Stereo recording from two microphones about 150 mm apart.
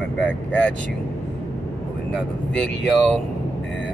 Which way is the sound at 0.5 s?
10° left (ahead or behind).